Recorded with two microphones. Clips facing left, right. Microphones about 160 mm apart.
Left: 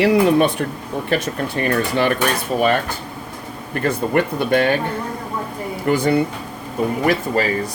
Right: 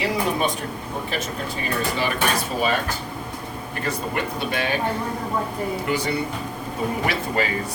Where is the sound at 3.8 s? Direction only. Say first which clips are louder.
Left 8 dB; 55° left (ahead or behind).